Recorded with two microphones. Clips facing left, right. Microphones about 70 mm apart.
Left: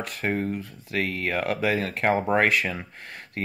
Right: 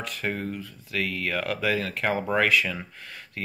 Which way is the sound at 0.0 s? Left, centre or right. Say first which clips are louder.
Left 3 dB; left.